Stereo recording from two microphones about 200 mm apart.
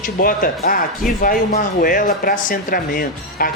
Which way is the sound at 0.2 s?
45° left (ahead or behind).